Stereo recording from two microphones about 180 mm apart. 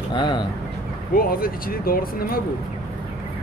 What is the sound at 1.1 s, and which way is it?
Speech, 55° left (ahead or behind).